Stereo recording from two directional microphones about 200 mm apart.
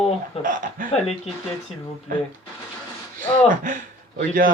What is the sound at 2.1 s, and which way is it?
Speech, 45° right (ahead or behind).